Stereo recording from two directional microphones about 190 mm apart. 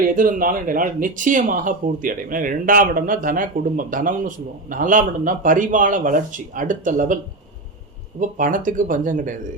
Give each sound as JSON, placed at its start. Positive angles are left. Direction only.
{"t": 0.0, "sound": "speech", "side_deg": -45}
{"t": 8.4, "sound": "speech", "side_deg": -45}